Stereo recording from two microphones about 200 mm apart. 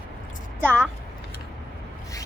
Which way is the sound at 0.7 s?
10° right (ahead or behind).